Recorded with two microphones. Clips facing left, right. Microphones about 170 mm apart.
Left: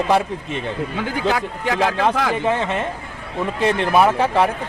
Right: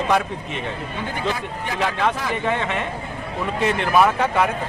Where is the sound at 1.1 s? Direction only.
90° left.